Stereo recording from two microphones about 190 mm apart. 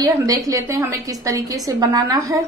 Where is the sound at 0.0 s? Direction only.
20° right (ahead or behind).